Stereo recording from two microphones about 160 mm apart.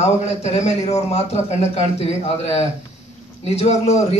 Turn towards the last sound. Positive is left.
turn(degrees=45)  # may be behind; listen again after turning